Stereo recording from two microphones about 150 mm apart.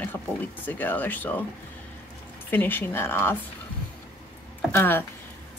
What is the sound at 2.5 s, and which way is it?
Speech, 15° left (ahead or behind).